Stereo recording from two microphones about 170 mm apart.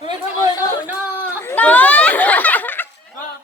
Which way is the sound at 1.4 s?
10° left (ahead or behind).